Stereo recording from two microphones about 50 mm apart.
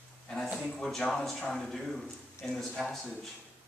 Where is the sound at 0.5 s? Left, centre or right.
Centre.